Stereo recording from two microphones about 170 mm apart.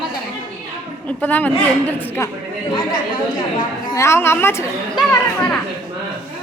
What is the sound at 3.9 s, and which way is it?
Speech, 15° left (ahead or behind).